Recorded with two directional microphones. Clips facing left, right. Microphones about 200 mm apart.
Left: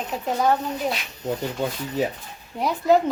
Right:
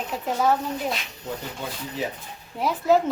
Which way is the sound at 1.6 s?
50° left (ahead or behind).